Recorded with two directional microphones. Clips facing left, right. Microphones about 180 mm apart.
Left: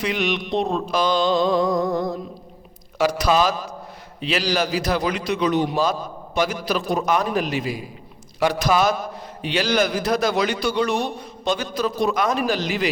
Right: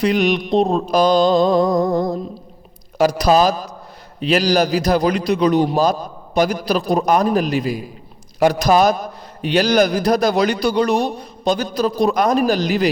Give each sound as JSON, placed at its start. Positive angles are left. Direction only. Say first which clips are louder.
{"t": 0.0, "sound": "a man's voice", "louder": "right 7 dB", "side_deg": -40}